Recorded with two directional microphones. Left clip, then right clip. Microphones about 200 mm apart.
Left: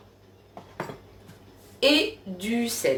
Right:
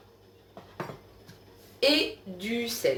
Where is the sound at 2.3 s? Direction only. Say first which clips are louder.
Left 2 dB; 5° left (ahead or behind).